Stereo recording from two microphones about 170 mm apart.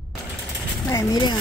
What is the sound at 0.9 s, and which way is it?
Speech, 20° left (ahead or behind).